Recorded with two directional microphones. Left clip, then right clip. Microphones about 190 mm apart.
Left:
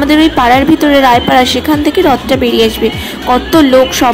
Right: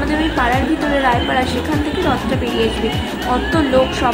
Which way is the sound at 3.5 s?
40° left (ahead or behind).